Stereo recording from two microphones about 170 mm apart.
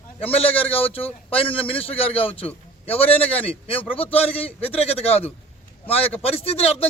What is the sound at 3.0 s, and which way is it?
Speech, 10° left (ahead or behind).